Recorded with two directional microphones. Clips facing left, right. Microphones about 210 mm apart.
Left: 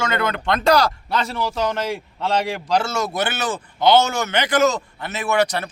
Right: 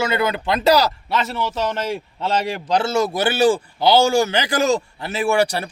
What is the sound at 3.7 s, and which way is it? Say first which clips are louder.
A man's voice: left 3 dB; 35° right (ahead or behind).